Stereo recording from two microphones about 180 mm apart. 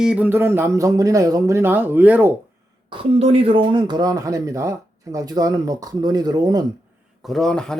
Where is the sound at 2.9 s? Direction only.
30° right (ahead or behind).